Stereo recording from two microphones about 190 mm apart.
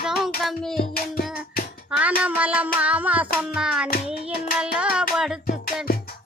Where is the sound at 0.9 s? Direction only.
50° left (ahead or behind).